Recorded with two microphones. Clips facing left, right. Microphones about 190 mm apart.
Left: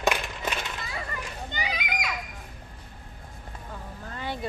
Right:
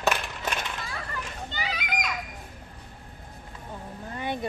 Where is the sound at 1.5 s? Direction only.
15° left (ahead or behind).